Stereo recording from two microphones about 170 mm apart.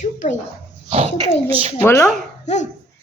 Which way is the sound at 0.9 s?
35° right (ahead or behind).